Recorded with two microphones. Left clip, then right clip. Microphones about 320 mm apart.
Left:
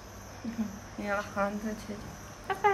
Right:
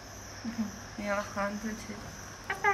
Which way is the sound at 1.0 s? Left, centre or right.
Centre.